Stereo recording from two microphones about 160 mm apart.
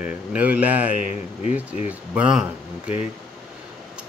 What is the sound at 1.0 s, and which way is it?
Speech, 50° left (ahead or behind).